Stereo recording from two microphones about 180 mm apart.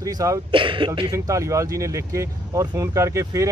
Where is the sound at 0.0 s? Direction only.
20° right (ahead or behind).